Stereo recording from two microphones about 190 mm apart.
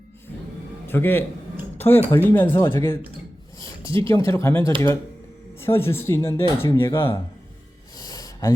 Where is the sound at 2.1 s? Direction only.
10° left (ahead or behind).